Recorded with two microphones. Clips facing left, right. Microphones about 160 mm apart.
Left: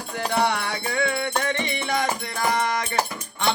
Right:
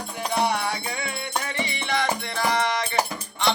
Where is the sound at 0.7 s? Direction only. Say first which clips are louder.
Left 5 dB; 60° left (ahead or behind).